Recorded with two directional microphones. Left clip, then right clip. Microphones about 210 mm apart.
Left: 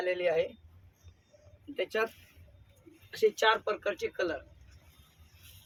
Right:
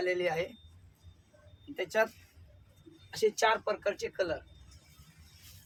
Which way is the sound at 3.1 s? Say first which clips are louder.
Left 2 dB; 15° right (ahead or behind).